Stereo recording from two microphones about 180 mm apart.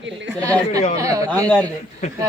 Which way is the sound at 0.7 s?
40° left (ahead or behind).